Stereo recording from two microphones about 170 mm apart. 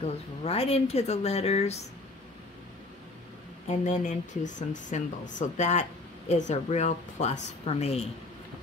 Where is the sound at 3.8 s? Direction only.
45° left (ahead or behind).